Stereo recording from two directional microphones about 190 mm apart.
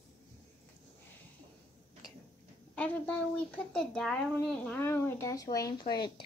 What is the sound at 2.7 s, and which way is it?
A woman's voice, 5° left (ahead or behind).